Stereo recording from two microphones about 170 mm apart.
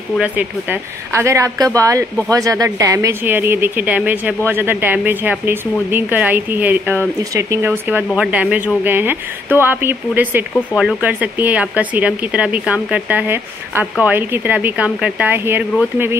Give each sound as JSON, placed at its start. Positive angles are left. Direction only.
{"t": 0.2, "sound": "speech", "side_deg": -10}